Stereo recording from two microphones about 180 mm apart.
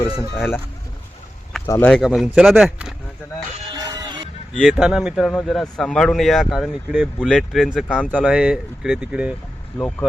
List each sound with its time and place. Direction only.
0.3 s speech: 10° left (ahead or behind)
1.6 s speech: 15° left (ahead or behind)
1.9 s speech: centre (ahead or behind)
3.7 s music: 20° right (ahead or behind)
4.5 s speech: centre (ahead or behind)